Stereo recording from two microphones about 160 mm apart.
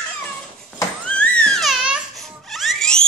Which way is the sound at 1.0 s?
10° left (ahead or behind).